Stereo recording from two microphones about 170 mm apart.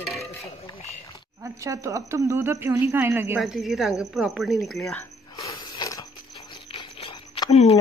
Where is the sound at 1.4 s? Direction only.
20° right (ahead or behind).